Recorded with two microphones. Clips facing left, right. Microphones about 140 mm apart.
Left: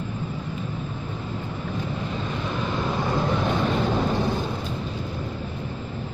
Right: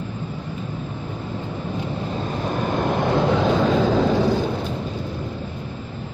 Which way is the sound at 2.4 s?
50° right (ahead or behind).